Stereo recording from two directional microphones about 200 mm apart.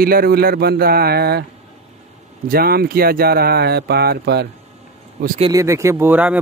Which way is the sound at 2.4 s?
50° right (ahead or behind).